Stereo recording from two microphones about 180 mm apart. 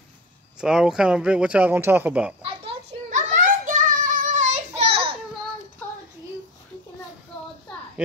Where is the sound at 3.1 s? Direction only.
45° right (ahead or behind).